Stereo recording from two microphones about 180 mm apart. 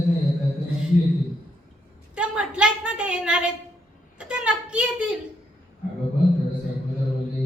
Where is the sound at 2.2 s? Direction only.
5° right (ahead or behind).